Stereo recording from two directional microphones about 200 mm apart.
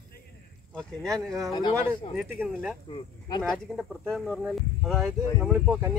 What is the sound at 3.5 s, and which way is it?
Speech, 5° left (ahead or behind).